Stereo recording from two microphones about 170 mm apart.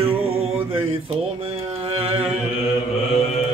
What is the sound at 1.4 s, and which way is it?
Mantra, 35° right (ahead or behind).